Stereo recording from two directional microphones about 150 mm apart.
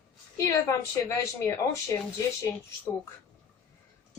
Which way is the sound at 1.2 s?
20° left (ahead or behind).